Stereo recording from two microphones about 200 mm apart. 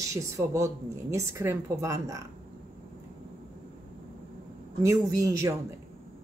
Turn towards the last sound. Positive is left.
turn(degrees=-15)  # may be behind; listen again after turning